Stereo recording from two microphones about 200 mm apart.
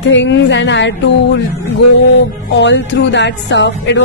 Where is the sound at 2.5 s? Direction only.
65° left (ahead or behind).